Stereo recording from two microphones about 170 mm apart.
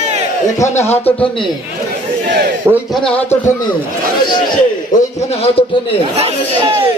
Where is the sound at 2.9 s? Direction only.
5° left (ahead or behind).